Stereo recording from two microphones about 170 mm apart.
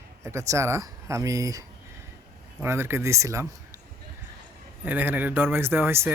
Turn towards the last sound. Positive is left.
turn(degrees=-15)  # may be behind; listen again after turning